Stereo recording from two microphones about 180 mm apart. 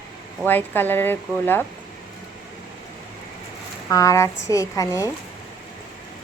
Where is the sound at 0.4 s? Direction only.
10° left (ahead or behind).